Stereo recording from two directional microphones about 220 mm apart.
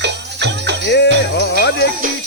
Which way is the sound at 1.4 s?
50° left (ahead or behind).